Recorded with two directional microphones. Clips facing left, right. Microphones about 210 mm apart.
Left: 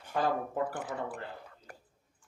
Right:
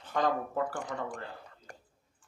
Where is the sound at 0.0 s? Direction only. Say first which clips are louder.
Right 1 dB; 10° left (ahead or behind).